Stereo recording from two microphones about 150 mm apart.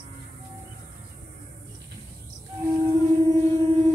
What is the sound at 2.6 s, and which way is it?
Music, 25° right (ahead or behind).